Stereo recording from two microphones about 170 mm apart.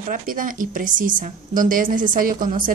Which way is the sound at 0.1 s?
55° right (ahead or behind).